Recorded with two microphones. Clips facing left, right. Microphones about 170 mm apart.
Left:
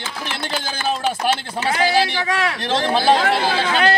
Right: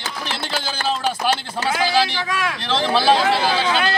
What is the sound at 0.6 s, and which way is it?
Speech, 40° right (ahead or behind).